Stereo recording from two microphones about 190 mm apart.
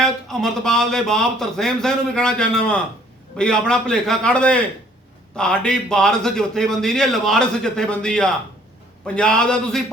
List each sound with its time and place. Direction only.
0.0 s a man's voice: centre (ahead or behind)